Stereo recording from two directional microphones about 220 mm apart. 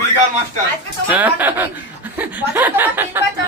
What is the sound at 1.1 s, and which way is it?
Speech, 5° right (ahead or behind).